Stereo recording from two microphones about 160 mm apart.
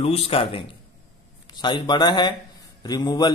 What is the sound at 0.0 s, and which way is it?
A man's voice, 40° left (ahead or behind).